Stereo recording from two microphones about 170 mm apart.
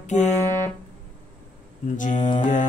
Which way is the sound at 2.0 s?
45° left (ahead or behind).